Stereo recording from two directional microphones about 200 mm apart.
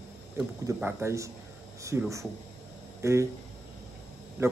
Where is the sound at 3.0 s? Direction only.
15° right (ahead or behind).